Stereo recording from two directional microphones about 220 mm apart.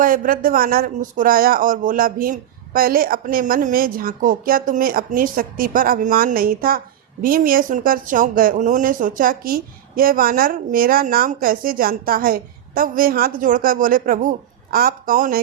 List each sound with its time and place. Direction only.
0.0 s speech: 40° right (ahead or behind)